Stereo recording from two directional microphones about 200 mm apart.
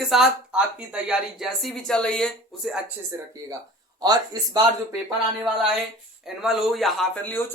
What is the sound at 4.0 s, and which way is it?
Speech, 20° right (ahead or behind).